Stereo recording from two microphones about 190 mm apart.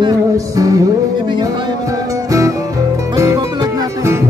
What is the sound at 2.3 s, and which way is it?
Music, 15° right (ahead or behind).